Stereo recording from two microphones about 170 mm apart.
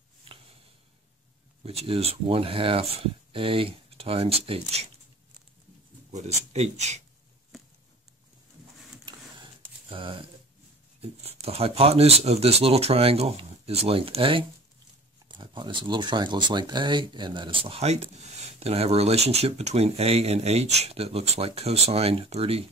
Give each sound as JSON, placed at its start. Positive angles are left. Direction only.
{"t": 1.6, "sound": "speech", "side_deg": -35}
{"t": 6.1, "sound": "speech", "side_deg": -40}
{"t": 9.0, "sound": "a sound", "side_deg": -30}
{"t": 11.0, "sound": "speech", "side_deg": -35}